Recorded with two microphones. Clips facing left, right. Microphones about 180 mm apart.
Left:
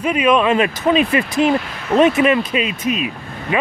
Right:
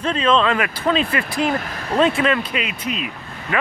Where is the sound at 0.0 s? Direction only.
15° left (ahead or behind).